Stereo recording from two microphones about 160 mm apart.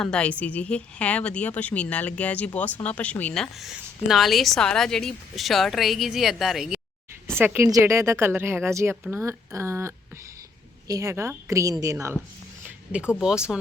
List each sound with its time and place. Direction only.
0.0 s a woman's voice: 5° left (ahead or behind)
7.3 s a woman's voice: 15° right (ahead or behind)
12.6 s speech: 5° right (ahead or behind)